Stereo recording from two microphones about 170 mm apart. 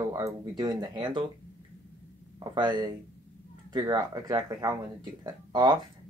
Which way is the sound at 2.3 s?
30° right (ahead or behind).